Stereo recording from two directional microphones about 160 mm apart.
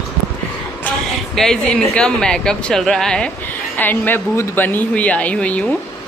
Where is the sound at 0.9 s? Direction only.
5° left (ahead or behind).